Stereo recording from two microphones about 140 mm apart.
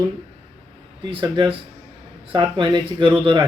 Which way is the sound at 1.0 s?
35° right (ahead or behind).